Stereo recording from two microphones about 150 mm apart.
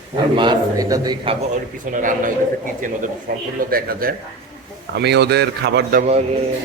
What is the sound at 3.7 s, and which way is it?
Speech, 80° right.